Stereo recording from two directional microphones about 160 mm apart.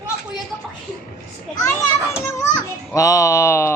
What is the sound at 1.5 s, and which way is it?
Children playing, 15° left (ahead or behind).